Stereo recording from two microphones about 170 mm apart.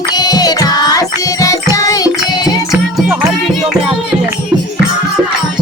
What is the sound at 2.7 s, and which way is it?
Music, centre (ahead or behind).